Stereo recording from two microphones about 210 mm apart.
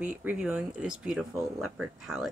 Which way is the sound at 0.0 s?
5° right (ahead or behind).